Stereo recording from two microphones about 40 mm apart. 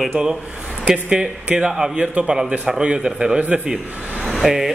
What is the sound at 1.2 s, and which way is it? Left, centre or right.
Speech, right.